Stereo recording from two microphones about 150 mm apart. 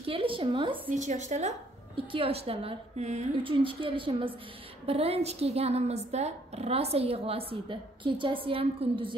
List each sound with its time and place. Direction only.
0.0 s a woman's voice: 35° right (ahead or behind)
0.9 s a woman's voice: 50° right (ahead or behind)
3.4 s a woman's voice: 35° right (ahead or behind)